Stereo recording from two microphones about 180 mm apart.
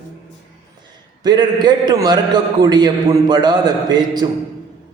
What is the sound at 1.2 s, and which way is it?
Speech, 25° right (ahead or behind).